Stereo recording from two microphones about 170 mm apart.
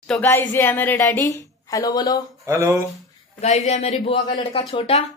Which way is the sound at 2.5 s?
15° right (ahead or behind).